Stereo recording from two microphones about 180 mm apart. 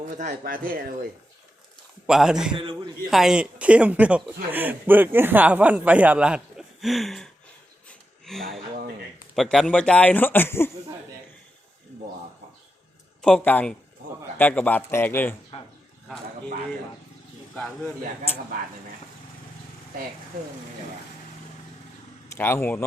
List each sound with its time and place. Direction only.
0.1 s speech: 45° right (ahead or behind)
2.0 s a man's voice: 5° right (ahead or behind)
2.6 s a man's voice: 25° right (ahead or behind)
3.1 s a man's voice: centre (ahead or behind)
13.2 s speech: 5° left (ahead or behind)
17.5 s speech: 5° left (ahead or behind)
22.3 s speech: 15° left (ahead or behind)